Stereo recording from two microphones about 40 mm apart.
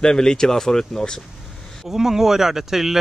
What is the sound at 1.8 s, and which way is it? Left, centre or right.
Speech, centre.